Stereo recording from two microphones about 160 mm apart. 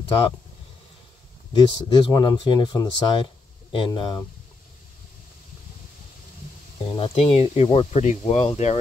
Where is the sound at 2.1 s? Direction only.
30° left (ahead or behind).